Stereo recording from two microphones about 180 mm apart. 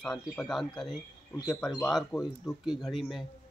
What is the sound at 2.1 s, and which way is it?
A man's voice, centre (ahead or behind).